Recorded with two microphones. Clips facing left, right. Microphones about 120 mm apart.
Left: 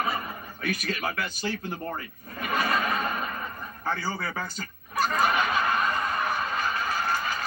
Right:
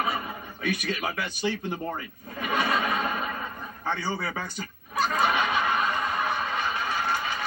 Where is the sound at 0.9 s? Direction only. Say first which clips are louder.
Even; 15° right (ahead or behind).